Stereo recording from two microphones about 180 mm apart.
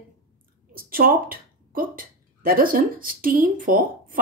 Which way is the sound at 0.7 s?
55° right (ahead or behind).